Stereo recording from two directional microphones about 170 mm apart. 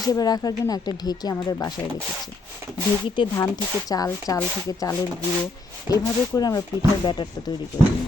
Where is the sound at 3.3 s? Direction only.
20° left (ahead or behind).